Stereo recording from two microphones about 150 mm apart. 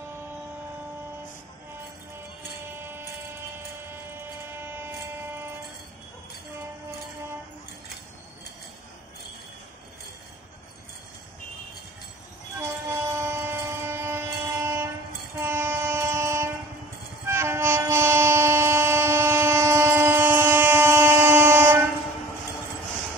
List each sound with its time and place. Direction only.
2.6 s music: 15° right (ahead or behind)
12.5 s train: 15° right (ahead or behind)